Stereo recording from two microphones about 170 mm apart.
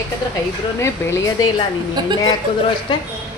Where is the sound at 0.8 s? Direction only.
15° left (ahead or behind).